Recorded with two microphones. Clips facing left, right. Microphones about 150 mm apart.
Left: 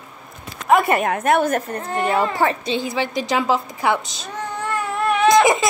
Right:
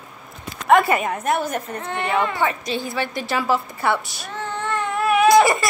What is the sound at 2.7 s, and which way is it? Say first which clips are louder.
A woman's voice: left 3 dB; 20° left (ahead or behind).